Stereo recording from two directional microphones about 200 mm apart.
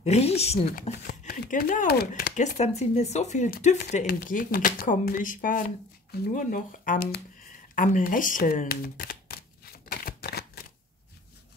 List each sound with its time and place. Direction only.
0.0 s speech: 30° left (ahead or behind)
0.7 s speech: 40° left (ahead or behind)
7.7 s shuffling cards: 40° left (ahead or behind)